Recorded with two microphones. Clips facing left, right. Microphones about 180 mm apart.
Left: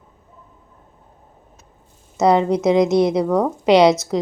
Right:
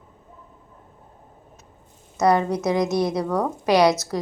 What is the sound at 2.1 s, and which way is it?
A woman's voice, 20° left (ahead or behind).